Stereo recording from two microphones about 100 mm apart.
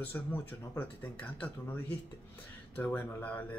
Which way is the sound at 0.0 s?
15° left (ahead or behind).